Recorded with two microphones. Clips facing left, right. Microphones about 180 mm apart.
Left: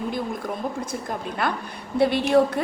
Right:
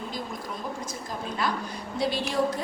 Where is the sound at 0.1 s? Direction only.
55° left (ahead or behind).